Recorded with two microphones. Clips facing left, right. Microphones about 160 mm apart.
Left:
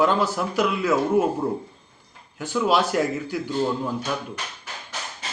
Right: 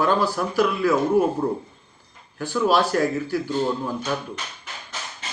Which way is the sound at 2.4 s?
20° left (ahead or behind).